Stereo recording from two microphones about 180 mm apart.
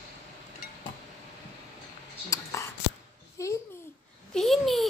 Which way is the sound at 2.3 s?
15° left (ahead or behind).